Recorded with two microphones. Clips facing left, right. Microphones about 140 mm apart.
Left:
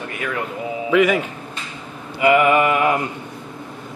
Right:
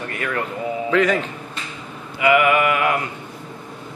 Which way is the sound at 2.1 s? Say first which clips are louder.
Left 2 dB; 35° left (ahead or behind).